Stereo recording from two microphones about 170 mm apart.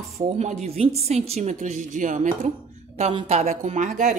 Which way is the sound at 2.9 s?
35° right (ahead or behind).